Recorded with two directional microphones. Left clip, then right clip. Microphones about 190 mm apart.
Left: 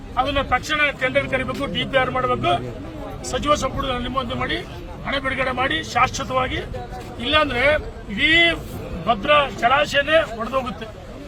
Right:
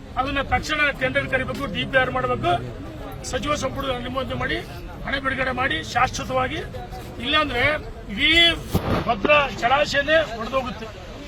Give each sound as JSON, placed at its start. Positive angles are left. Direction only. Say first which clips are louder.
{"t": 0.2, "sound": "speech", "louder": "left 3 dB", "side_deg": 0}
{"t": 9.3, "sound": "speech", "louder": "left 1 dB", "side_deg": 25}